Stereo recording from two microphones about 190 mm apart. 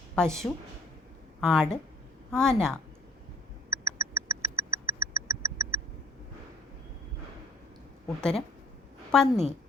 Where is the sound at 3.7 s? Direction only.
15° right (ahead or behind).